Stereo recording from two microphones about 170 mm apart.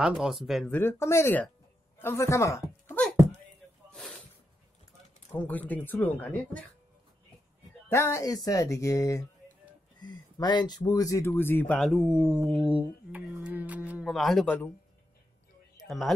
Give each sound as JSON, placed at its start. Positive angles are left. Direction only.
{"t": 0.0, "sound": "speech", "side_deg": 0}
{"t": 0.7, "sound": "a woman's voice", "side_deg": 15}
{"t": 3.9, "sound": "snort", "side_deg": 5}
{"t": 5.3, "sound": "speech", "side_deg": 10}
{"t": 7.9, "sound": "speech", "side_deg": 15}
{"t": 11.9, "sound": "speech", "side_deg": -5}